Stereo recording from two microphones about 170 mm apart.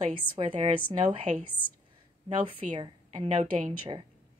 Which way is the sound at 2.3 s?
30° right (ahead or behind).